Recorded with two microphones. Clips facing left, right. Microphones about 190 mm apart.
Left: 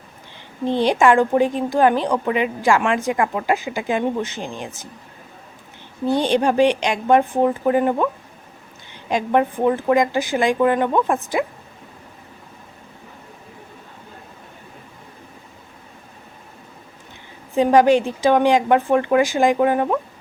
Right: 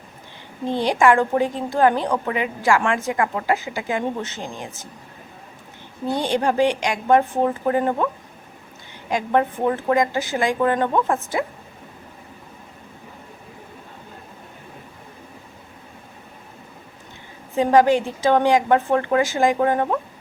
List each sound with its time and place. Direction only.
0.6 s a woman's voice: 20° left (ahead or behind)
6.1 s a woman's voice: 20° left (ahead or behind)
9.0 s a woman's voice: 20° left (ahead or behind)
17.5 s a woman's voice: 20° left (ahead or behind)